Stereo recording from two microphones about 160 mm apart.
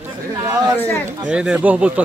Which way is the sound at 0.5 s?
20° right (ahead or behind).